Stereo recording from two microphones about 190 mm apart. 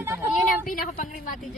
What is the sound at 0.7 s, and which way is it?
Speech, 45° left (ahead or behind).